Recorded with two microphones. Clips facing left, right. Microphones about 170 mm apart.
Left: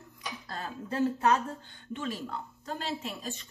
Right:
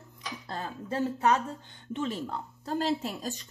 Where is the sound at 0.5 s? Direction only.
20° right (ahead or behind).